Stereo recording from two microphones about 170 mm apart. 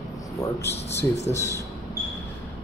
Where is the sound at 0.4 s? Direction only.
15° left (ahead or behind).